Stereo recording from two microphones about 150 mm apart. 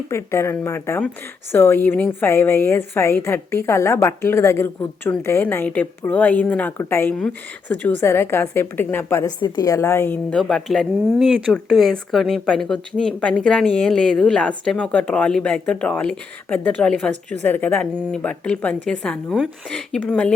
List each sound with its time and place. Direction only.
0.1 s speech: 15° left (ahead or behind)